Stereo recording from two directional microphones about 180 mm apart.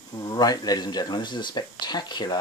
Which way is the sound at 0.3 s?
20° left (ahead or behind).